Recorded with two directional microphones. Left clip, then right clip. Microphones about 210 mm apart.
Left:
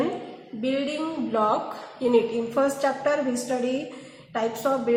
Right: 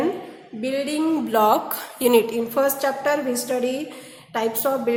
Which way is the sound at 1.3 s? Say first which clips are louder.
Right 5 dB; 60° right (ahead or behind).